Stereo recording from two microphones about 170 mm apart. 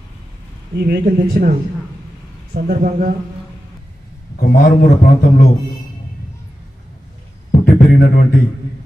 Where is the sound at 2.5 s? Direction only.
60° right (ahead or behind).